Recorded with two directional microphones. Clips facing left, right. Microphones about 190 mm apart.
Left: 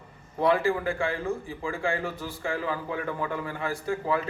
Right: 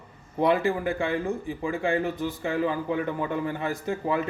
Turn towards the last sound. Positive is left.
turn(degrees=-20)  # may be behind; listen again after turning